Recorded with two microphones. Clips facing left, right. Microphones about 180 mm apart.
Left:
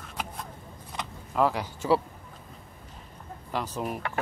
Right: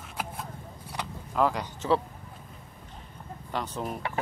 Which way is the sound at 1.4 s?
5° left (ahead or behind).